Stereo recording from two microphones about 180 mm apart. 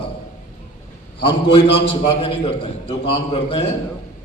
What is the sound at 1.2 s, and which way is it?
Speech, 30° left (ahead or behind).